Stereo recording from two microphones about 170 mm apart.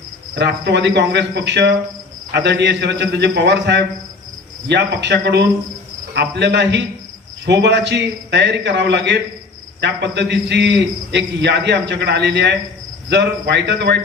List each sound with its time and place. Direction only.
0.3 s a man's voice: 85° right